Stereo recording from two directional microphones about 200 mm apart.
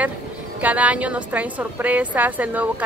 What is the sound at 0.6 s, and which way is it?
A woman's voice, 5° right (ahead or behind).